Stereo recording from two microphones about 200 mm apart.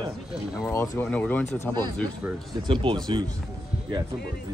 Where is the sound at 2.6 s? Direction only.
25° right (ahead or behind).